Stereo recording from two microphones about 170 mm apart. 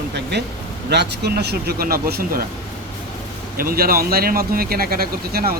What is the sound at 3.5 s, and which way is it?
Speech, 60° right (ahead or behind).